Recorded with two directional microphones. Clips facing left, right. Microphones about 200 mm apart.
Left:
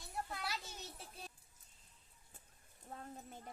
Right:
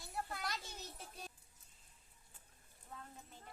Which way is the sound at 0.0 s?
Centre (ahead or behind).